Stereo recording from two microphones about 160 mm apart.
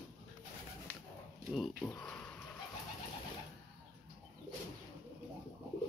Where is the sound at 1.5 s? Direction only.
Centre (ahead or behind).